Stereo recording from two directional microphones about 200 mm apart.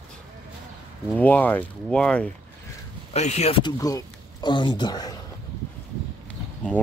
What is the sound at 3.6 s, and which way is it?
Speech, 20° left (ahead or behind).